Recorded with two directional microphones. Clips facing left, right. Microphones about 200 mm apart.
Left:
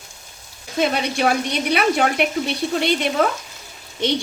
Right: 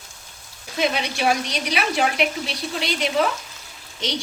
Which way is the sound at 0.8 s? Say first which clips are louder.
Left 3 dB; 55° left (ahead or behind).